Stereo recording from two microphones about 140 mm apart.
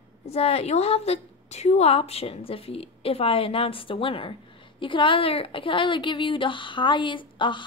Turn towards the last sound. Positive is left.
turn(degrees=35)  # may be behind; listen again after turning